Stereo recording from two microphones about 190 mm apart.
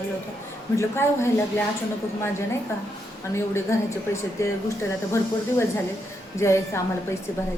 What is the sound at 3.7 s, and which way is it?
Speech, 15° left (ahead or behind).